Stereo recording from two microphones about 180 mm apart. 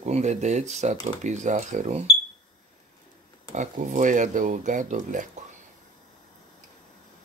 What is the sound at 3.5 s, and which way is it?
Speech, 45° right (ahead or behind).